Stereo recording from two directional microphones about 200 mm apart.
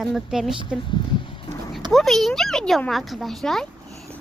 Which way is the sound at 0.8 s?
25° left (ahead or behind).